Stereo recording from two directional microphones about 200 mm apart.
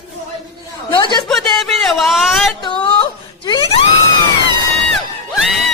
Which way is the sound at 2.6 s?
20° left (ahead or behind).